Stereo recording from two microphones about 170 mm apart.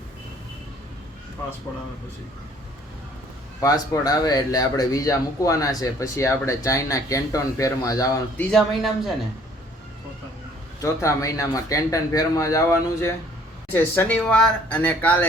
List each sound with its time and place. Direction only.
3.6 s speech: 20° left (ahead or behind)
8.4 s speech: centre (ahead or behind)
10.8 s speech: 20° left (ahead or behind)